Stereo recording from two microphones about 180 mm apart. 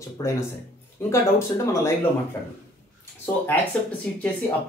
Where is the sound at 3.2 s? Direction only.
10° left (ahead or behind).